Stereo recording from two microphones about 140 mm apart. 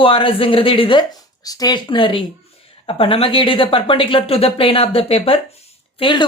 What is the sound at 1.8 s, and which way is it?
Speech, 35° left (ahead or behind).